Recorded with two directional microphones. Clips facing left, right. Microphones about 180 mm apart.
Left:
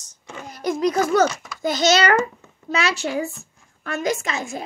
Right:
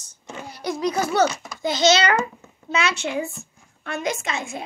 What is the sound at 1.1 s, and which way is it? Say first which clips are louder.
A child's voice: left 2 dB; 45° left (ahead or behind).